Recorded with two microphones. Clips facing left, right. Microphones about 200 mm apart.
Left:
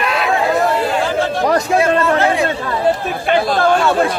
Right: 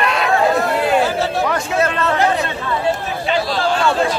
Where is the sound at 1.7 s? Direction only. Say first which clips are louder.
Left 1 dB; 10° left (ahead or behind).